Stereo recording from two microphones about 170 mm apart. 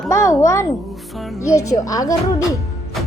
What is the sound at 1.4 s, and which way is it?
Speech, 20° left (ahead or behind).